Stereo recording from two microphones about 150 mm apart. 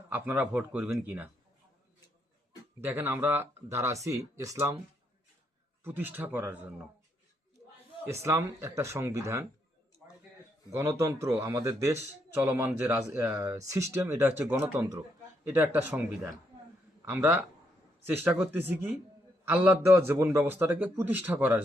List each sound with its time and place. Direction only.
0.1 s speech: 10° right (ahead or behind)
2.8 s speech: 15° right (ahead or behind)
5.8 s speech: 15° right (ahead or behind)
8.0 s speech: 20° right (ahead or behind)
10.8 s speech: 15° right (ahead or behind)